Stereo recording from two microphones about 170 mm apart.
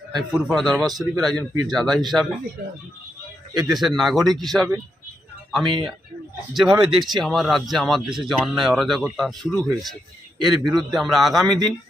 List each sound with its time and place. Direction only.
0.2 s speech: centre (ahead or behind)
3.5 s speech: centre (ahead or behind)
6.7 s speech: 25° right (ahead or behind)
7.2 s speech: centre (ahead or behind)